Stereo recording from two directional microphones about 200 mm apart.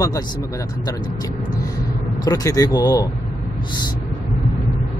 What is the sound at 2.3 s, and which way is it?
Speech, 15° left (ahead or behind).